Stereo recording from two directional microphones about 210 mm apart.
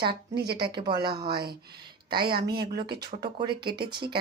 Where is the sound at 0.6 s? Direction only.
20° right (ahead or behind).